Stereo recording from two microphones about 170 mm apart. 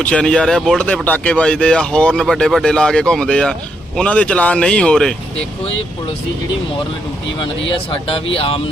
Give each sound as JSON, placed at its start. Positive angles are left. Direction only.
{"t": 0.0, "sound": "speech", "side_deg": 5}
{"t": 7.6, "sound": "speech", "side_deg": 35}